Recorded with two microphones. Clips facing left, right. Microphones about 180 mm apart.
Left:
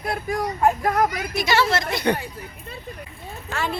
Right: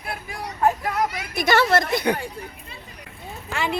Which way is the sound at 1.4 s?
55° right (ahead or behind).